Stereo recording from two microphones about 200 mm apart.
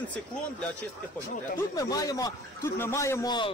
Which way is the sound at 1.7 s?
15° left (ahead or behind).